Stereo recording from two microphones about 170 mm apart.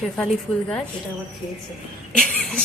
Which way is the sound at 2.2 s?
5° left (ahead or behind).